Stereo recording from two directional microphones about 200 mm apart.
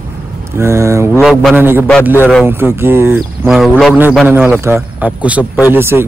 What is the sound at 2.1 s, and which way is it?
Speech, 10° left (ahead or behind).